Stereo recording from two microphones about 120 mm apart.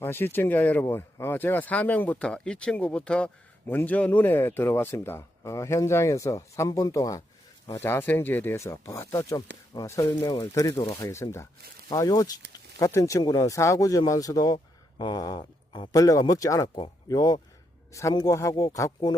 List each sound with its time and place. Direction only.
0.0 s speech: 20° left (ahead or behind); by 19.1 s 35° left (ahead or behind)